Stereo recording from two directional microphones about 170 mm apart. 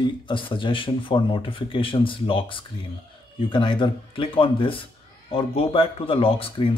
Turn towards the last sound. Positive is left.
turn(degrees=30)  # may be behind; listen again after turning